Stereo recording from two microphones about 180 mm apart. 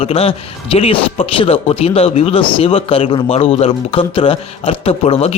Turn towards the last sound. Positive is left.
turn(degrees=35)  # may be behind; listen again after turning